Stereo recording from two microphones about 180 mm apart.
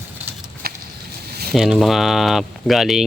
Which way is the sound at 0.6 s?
60° right (ahead or behind).